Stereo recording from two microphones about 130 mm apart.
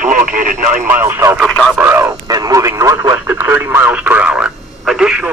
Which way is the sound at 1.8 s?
15° right (ahead or behind).